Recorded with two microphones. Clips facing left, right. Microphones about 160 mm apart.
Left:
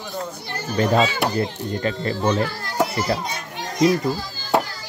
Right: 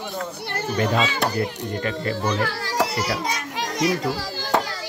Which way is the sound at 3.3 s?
90° right.